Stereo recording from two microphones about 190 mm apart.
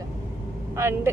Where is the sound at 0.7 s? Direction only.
15° right (ahead or behind).